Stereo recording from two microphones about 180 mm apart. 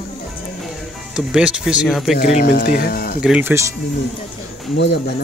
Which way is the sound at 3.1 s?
5° right (ahead or behind).